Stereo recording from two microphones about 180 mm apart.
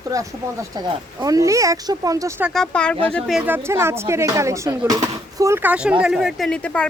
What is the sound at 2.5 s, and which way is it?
Speech, 5° left (ahead or behind).